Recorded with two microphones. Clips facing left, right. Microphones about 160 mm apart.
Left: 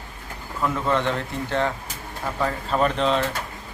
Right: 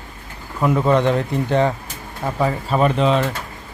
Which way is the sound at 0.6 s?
15° right (ahead or behind).